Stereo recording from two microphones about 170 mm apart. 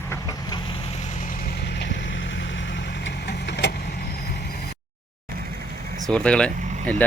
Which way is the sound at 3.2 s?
85° left.